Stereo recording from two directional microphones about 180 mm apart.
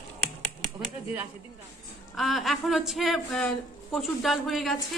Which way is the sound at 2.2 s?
Centre (ahead or behind).